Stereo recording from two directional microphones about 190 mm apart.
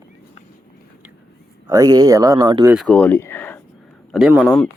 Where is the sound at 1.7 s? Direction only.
20° right (ahead or behind).